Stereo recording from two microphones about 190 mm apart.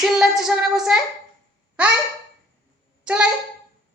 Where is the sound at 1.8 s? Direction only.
5° right (ahead or behind).